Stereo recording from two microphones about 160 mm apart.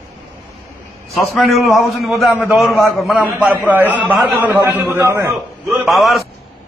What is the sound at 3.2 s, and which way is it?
A man's voice, 15° right (ahead or behind).